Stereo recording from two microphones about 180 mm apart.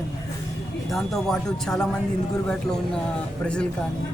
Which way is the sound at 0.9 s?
Centre (ahead or behind).